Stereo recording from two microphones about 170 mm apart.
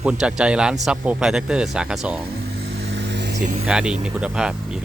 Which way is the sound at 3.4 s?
45° right (ahead or behind).